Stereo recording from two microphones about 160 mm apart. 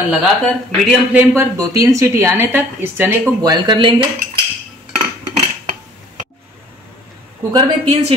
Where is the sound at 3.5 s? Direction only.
25° right (ahead or behind).